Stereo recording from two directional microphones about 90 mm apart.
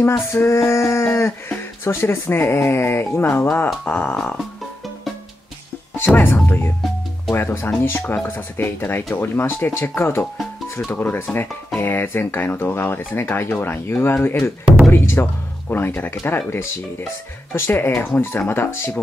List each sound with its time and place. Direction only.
0.3 s a sound: 30° left (ahead or behind)
1.9 s speech: 30° left (ahead or behind)
4.0 s music: 10° left (ahead or behind)
5.9 s speech: 25° left (ahead or behind)